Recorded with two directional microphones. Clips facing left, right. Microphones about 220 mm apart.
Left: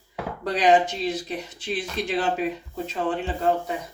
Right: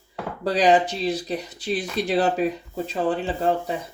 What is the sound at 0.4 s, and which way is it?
Speech, 35° right (ahead or behind).